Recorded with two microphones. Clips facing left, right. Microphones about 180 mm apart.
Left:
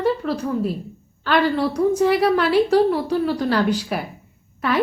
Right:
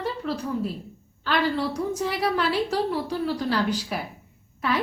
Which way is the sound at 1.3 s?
60° left (ahead or behind).